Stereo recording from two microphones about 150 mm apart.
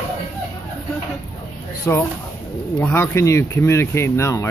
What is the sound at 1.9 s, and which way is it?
Speech, 15° left (ahead or behind).